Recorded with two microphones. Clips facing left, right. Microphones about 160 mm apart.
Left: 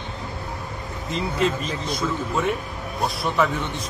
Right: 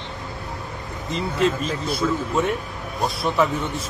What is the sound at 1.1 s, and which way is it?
A man's voice, centre (ahead or behind).